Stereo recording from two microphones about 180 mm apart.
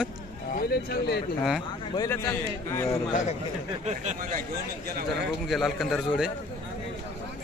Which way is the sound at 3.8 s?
40° right (ahead or behind).